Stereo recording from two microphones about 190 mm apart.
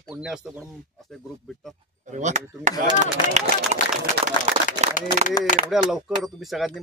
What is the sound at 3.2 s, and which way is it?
Speech, 25° left (ahead or behind).